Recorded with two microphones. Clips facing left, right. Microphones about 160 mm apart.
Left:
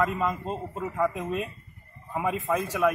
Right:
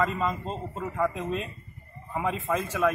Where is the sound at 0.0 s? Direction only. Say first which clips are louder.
Left 1 dB; 10° left (ahead or behind).